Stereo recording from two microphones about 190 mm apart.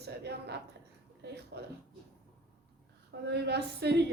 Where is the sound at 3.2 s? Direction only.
60° right (ahead or behind).